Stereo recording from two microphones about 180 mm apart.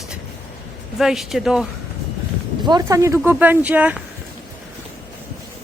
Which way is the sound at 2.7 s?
20° right (ahead or behind).